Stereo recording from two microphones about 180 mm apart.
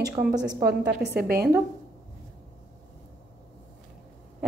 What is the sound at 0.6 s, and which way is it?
Speech, 65° right (ahead or behind).